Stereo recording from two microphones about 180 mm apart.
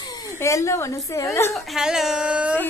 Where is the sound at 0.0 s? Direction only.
20° left (ahead or behind).